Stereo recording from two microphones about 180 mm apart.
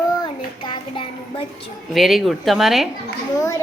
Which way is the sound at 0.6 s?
25° left (ahead or behind).